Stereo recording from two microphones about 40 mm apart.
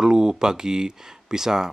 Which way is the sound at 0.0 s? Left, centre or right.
Centre.